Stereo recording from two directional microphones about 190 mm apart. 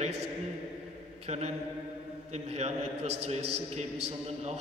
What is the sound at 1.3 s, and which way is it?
A man's voice, 35° right (ahead or behind).